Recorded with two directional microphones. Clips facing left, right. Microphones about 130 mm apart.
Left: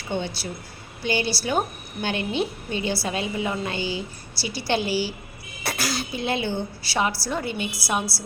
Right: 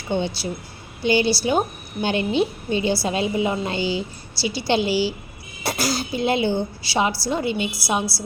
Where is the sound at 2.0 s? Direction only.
30° right (ahead or behind).